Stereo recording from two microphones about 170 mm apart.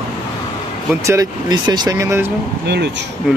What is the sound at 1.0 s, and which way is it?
Speech, 20° right (ahead or behind).